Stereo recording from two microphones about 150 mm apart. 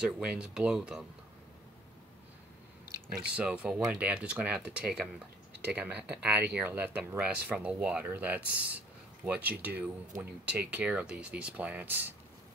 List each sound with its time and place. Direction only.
0.0 s speech: 5° right (ahead or behind)
3.1 s speech: 5° right (ahead or behind)